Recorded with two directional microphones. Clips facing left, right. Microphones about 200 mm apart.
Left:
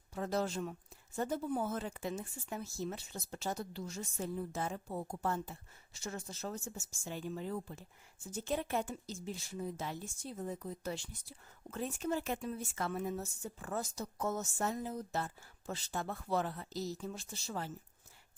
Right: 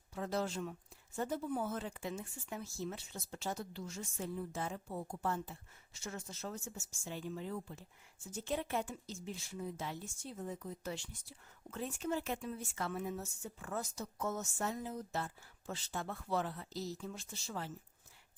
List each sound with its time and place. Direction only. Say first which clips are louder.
0.1 s speech: left 2 dB; 40° left (ahead or behind)